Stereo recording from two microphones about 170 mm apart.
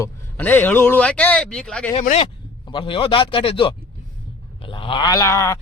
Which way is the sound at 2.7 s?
30° left (ahead or behind).